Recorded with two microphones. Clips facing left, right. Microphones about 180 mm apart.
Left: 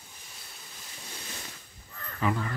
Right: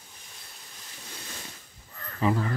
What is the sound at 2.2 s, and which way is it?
Speech, 30° right (ahead or behind).